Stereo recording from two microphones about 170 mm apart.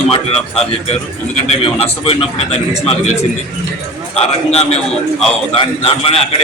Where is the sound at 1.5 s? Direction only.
35° left (ahead or behind).